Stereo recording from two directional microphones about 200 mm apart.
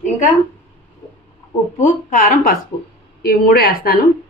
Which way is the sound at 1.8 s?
40° left (ahead or behind).